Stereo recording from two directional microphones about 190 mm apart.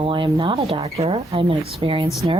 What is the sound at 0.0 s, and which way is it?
Speech, 25° right (ahead or behind).